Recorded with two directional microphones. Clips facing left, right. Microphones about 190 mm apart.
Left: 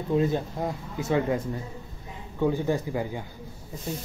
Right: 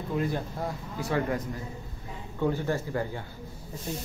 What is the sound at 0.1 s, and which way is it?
Speech, 20° left (ahead or behind).